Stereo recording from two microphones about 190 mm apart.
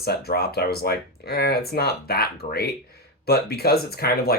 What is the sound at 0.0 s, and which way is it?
Speech, 55° left (ahead or behind).